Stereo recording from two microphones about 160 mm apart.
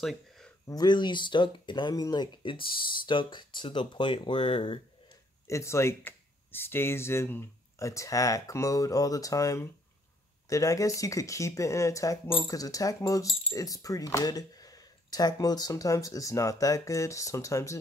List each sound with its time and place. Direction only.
0.0 s a sound: centre (ahead or behind)
0.7 s speech: 25° left (ahead or behind)
5.5 s speech: 15° left (ahead or behind)